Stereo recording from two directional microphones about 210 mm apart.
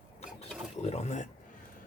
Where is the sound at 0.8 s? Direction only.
30° left (ahead or behind).